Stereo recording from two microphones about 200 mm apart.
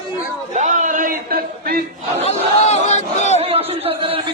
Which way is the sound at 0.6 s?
40° right (ahead or behind).